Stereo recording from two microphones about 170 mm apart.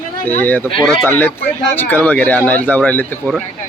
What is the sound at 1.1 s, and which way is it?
A man's voice, 10° left (ahead or behind).